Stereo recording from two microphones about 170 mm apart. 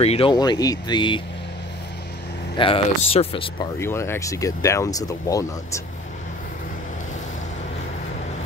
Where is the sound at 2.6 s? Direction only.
30° left (ahead or behind).